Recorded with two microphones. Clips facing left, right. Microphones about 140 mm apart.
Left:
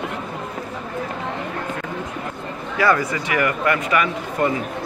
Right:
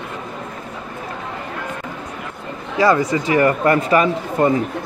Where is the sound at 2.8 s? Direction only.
25° right (ahead or behind).